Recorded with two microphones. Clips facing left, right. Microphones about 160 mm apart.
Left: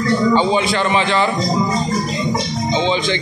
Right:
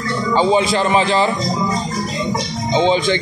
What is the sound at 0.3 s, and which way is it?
Speech, 35° right (ahead or behind).